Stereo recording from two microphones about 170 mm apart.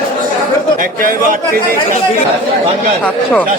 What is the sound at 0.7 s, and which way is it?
Speech, 55° right (ahead or behind).